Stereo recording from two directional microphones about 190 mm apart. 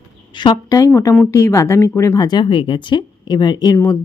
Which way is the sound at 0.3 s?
20° left (ahead or behind).